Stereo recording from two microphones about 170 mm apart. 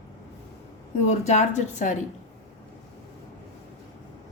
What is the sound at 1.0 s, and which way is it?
Speech, 40° left (ahead or behind).